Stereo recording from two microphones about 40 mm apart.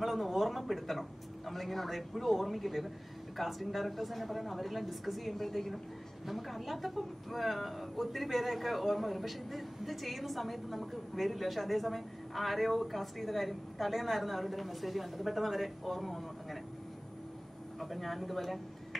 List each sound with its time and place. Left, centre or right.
0.0 s speech: centre
17.7 s speech: centre